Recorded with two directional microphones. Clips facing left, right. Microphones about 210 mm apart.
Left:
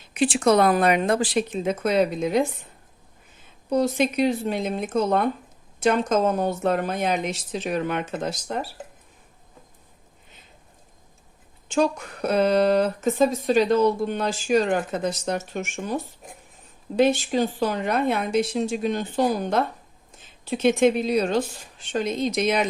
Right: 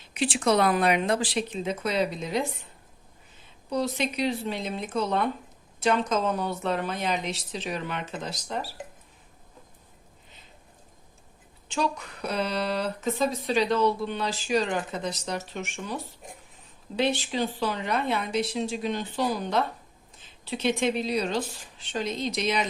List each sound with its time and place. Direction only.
0.1 s speech: 50° left (ahead or behind)
3.7 s speech: 50° left (ahead or behind)
11.7 s speech: 50° left (ahead or behind)
17.0 s speech: 45° left (ahead or behind)